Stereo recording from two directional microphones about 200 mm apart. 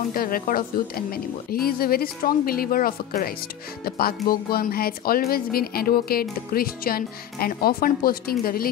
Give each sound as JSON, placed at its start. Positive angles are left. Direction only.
{"t": 0.1, "sound": "a woman's voice", "side_deg": 45}